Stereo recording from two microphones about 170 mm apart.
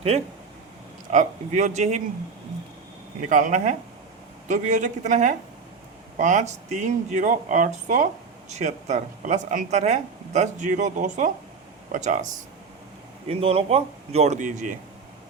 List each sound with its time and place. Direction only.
0.1 s speech: 40° right (ahead or behind)
3.2 s speech: 50° right (ahead or behind)